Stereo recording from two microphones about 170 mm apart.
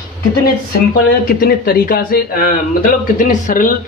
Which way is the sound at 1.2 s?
60° left (ahead or behind).